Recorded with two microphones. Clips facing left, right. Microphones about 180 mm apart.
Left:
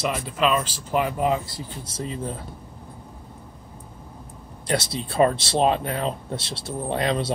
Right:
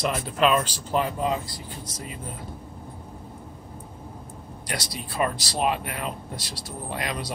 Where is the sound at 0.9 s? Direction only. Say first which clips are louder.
Left 3 dB; 15° left (ahead or behind).